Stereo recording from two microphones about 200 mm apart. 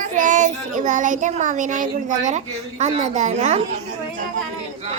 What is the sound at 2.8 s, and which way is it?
Speech, 35° right (ahead or behind).